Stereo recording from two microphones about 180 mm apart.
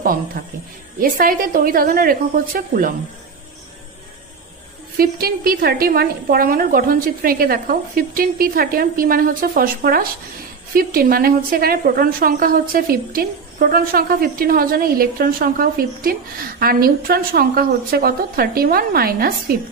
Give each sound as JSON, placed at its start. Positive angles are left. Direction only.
{"t": 0.0, "sound": "a woman's voice", "side_deg": -50}
{"t": 4.9, "sound": "a woman's voice", "side_deg": -55}